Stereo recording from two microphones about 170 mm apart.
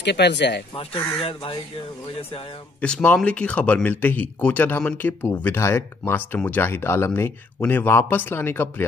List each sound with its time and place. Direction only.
0.0 s speech: 85° left
0.7 s speech: 35° left (ahead or behind)
2.8 s speech: 5° left (ahead or behind)